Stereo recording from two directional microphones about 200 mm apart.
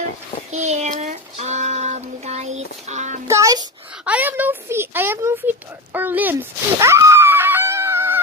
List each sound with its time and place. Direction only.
0.5 s child singing: 35° right (ahead or behind)
3.3 s child singing: 15° right (ahead or behind)
4.0 s a sound: 10° right (ahead or behind)
6.8 s dog: 15° right (ahead or behind)